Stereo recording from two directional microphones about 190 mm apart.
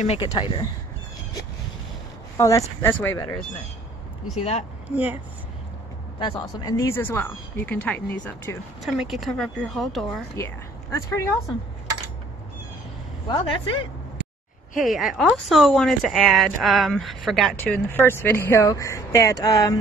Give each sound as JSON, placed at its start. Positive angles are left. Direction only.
{"t": 0.0, "sound": "speech", "side_deg": 35}
{"t": 2.3, "sound": "speech", "side_deg": 15}
{"t": 4.4, "sound": "speech", "side_deg": 35}
{"t": 4.9, "sound": "speech", "side_deg": -10}
{"t": 6.1, "sound": "speech", "side_deg": 25}
{"t": 10.3, "sound": "speech", "side_deg": 15}
{"t": 14.8, "sound": "speech", "side_deg": 0}
{"t": 17.8, "sound": "speech", "side_deg": 10}